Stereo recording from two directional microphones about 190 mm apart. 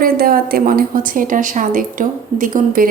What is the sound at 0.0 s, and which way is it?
Speech, 50° right (ahead or behind).